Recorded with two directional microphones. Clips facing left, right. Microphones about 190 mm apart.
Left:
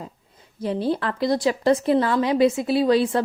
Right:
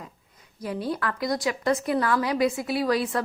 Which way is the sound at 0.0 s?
30° left (ahead or behind).